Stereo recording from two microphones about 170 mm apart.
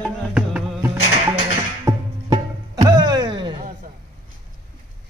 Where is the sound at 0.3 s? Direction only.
5° right (ahead or behind).